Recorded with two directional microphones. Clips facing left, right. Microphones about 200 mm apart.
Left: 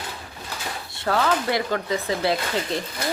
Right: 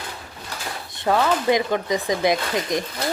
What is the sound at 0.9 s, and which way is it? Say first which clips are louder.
A woman's voice: right 2 dB; 15° right (ahead or behind).